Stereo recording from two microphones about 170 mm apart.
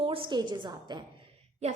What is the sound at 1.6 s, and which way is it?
Speech, 40° right (ahead or behind).